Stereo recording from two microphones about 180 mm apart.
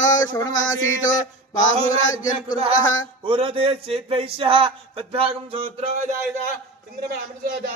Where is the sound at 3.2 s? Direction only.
30° right (ahead or behind).